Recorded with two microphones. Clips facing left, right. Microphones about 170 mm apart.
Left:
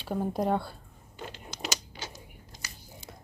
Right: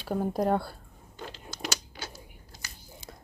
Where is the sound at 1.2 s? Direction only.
10° left (ahead or behind).